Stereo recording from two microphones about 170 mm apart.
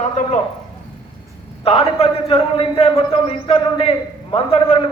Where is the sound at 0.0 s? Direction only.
45° left (ahead or behind).